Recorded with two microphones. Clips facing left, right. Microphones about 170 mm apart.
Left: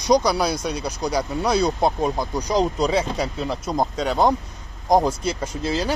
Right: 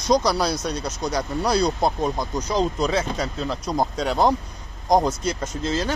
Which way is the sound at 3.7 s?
Centre (ahead or behind).